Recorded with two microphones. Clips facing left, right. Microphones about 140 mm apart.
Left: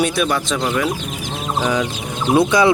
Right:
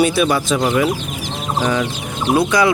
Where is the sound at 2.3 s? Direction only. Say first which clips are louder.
Left 1 dB; 25° left (ahead or behind).